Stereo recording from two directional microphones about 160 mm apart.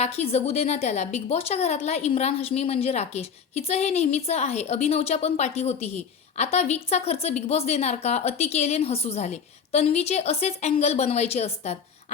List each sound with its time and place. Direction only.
0.0 s a woman's voice: 40° left (ahead or behind)